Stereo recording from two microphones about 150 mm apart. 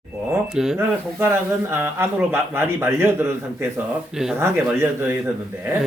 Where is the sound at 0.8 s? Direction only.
15° right (ahead or behind).